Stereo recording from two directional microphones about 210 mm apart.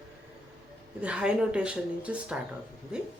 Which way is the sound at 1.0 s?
5° right (ahead or behind).